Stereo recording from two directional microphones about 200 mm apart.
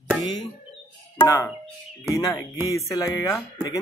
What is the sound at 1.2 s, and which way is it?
Speech, 15° left (ahead or behind).